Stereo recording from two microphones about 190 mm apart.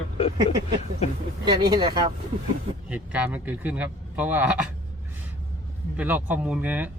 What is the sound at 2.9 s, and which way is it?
Speech, 5° right (ahead or behind).